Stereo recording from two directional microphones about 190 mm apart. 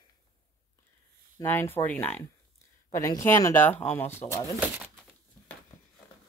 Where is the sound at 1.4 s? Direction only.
10° left (ahead or behind).